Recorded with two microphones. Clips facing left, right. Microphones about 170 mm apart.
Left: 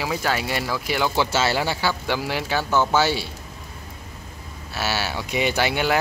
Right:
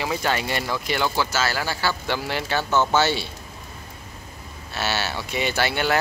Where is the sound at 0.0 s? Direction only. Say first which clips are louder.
Even; 5° left (ahead or behind).